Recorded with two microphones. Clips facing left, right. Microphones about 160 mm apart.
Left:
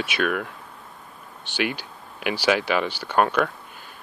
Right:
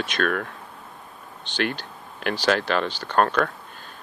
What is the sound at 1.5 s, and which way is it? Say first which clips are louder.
Speech: even; 10° left (ahead or behind).